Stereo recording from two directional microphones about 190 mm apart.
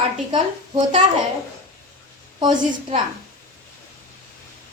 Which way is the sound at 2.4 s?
25° right (ahead or behind).